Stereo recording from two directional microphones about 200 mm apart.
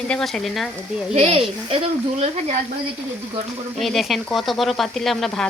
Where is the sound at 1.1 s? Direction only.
30° right (ahead or behind).